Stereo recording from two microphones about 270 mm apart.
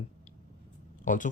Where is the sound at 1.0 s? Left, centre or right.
Left.